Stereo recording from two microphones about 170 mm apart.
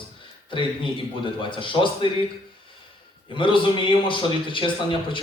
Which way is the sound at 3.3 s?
30° left (ahead or behind).